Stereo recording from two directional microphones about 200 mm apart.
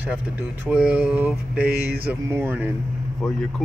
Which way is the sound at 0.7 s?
5° right (ahead or behind).